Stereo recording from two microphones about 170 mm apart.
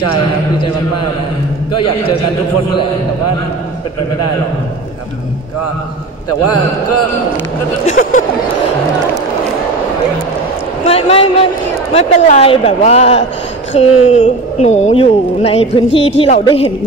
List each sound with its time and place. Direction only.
7.8 s speech: 50° left (ahead or behind)
10.9 s speech: 35° left (ahead or behind)